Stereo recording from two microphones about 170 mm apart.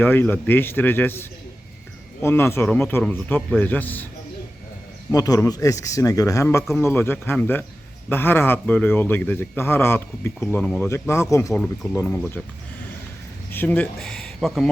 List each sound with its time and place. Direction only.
0.0 s a man's voice: 10° left (ahead or behind)
2.2 s a man's voice: 15° left (ahead or behind)
5.1 s a man's voice: 20° left (ahead or behind)
11.5 s a man's voice: 5° left (ahead or behind)
13.5 s speech: 10° left (ahead or behind)